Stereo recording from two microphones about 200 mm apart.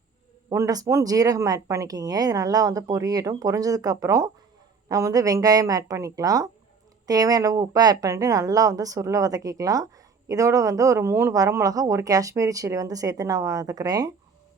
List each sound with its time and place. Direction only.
0.5 s speech: 20° right (ahead or behind)